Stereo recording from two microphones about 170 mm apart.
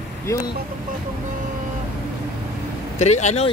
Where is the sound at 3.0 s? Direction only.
40° left (ahead or behind).